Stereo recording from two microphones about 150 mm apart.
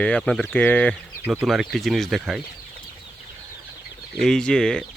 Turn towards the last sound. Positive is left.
turn(degrees=5)  # may be behind; listen again after turning